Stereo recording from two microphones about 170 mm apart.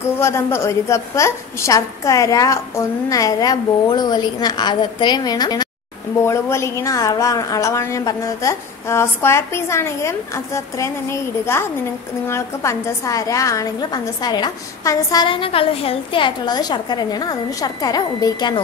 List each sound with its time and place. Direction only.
0.0 s a woman's voice: 15° left (ahead or behind)